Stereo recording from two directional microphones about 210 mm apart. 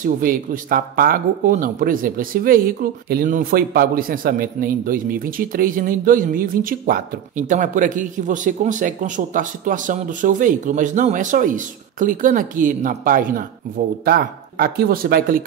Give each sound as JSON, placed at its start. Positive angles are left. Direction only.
{"t": 0.0, "sound": "speech", "side_deg": -40}